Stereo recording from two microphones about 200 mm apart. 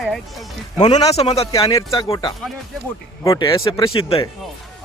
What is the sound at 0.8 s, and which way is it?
Speech, 30° left (ahead or behind).